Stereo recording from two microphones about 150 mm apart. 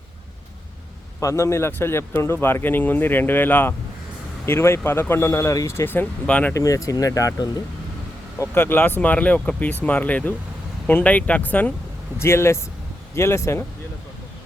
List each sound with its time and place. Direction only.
1.2 s speech: 20° left (ahead or behind)
6.5 s speech: 20° left (ahead or behind)